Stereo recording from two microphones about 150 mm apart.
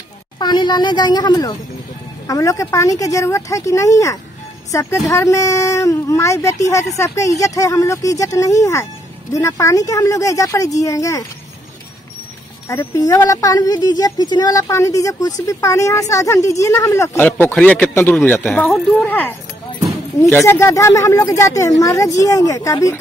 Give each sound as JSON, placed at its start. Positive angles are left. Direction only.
{"t": 0.4, "sound": "a man's voice", "side_deg": 30}
{"t": 12.6, "sound": "speech", "side_deg": 20}
{"t": 17.3, "sound": "a man's voice", "side_deg": 10}
{"t": 20.4, "sound": "speech", "side_deg": 20}